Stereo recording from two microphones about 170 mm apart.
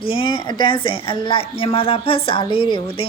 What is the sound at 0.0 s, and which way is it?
A woman's voice, 30° left (ahead or behind).